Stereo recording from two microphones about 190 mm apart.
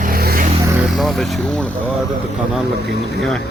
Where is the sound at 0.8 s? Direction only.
Centre (ahead or behind).